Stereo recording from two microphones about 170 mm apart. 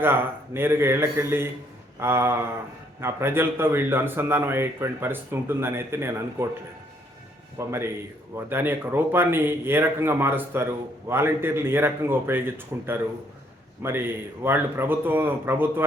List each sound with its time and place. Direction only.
0.0 s a man's voice: 10° right (ahead or behind)
7.7 s a man's voice: 15° right (ahead or behind)